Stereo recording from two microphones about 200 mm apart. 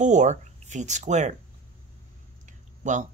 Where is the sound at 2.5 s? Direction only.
40° right (ahead or behind).